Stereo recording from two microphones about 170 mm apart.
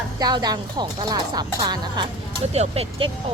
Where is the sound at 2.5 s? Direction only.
35° right (ahead or behind).